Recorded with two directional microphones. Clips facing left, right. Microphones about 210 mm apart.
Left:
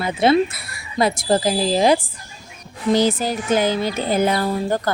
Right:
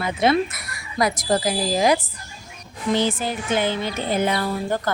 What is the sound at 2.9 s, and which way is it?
Speech, 40° left (ahead or behind).